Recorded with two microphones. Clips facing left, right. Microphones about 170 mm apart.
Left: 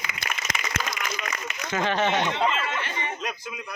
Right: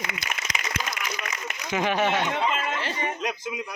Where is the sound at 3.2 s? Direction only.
15° right (ahead or behind).